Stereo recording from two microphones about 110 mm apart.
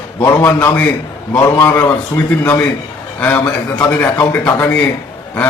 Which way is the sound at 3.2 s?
15° left (ahead or behind).